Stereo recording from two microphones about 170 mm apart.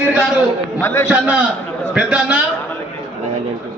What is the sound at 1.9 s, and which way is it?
Speech, 5° right (ahead or behind).